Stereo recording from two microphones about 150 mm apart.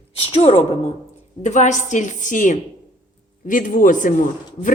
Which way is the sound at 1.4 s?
55° left (ahead or behind).